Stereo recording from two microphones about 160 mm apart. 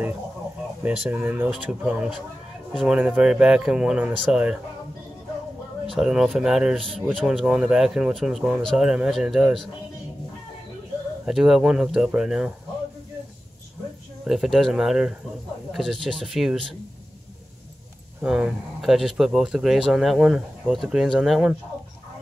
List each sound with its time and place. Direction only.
0.8 s speech: 10° right (ahead or behind)
5.9 s speech: 5° right (ahead or behind)
11.2 s speech: 5° right (ahead or behind)
14.2 s speech: centre (ahead or behind)
18.2 s speech: 5° right (ahead or behind)